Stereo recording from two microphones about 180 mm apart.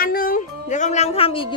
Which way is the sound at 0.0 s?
55° left (ahead or behind).